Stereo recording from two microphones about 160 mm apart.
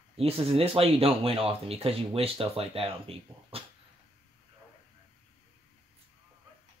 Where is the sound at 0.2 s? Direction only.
35° right (ahead or behind).